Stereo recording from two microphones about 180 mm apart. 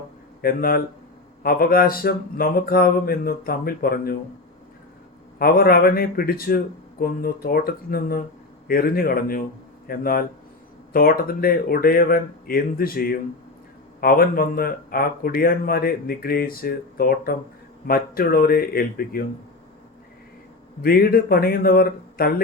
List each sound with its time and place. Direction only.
0.4 s speech: 55° left (ahead or behind)
5.4 s a man's voice: 55° left (ahead or behind)
20.8 s speech: 55° left (ahead or behind)